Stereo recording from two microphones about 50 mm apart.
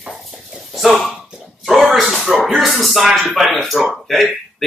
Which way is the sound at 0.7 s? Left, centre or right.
Centre.